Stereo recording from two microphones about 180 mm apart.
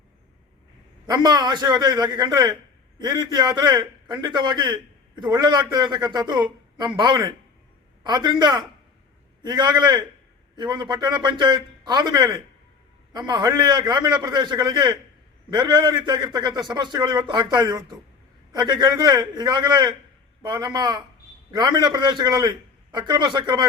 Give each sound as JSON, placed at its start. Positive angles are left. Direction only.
{"t": 1.0, "sound": "a man's voice", "side_deg": -20}